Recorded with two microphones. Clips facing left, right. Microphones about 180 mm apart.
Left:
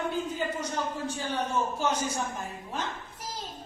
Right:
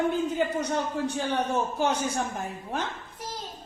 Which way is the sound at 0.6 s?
65° right (ahead or behind).